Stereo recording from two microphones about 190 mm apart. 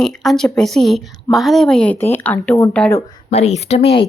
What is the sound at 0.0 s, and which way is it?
A woman's voice, centre (ahead or behind).